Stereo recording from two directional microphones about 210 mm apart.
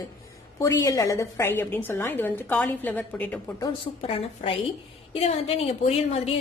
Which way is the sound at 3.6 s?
25° left (ahead or behind).